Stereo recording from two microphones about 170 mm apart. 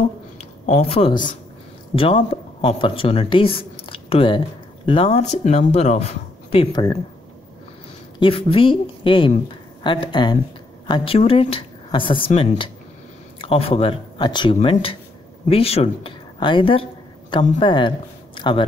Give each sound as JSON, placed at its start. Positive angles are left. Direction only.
{"t": 0.4, "sound": "a sound", "side_deg": 40}
{"t": 2.0, "sound": "speech", "side_deg": 35}
{"t": 8.2, "sound": "speech", "side_deg": 30}